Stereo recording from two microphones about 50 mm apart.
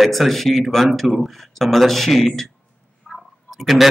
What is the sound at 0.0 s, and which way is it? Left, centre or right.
Speech, centre.